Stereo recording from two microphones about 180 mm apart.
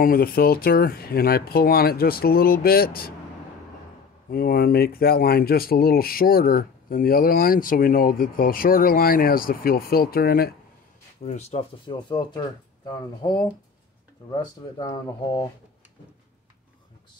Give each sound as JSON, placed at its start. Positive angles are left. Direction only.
{"t": 0.0, "sound": "speech", "side_deg": 55}
{"t": 4.3, "sound": "speech", "side_deg": 55}
{"t": 11.2, "sound": "speech", "side_deg": 40}
{"t": 11.9, "sound": "speech", "side_deg": 25}